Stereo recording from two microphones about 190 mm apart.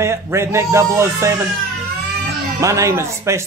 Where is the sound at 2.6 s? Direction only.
15° right (ahead or behind).